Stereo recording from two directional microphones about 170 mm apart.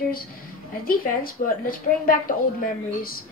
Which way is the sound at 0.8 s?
55° left (ahead or behind).